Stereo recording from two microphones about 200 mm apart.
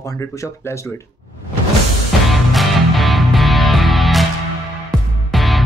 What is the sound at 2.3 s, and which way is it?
Music, centre (ahead or behind).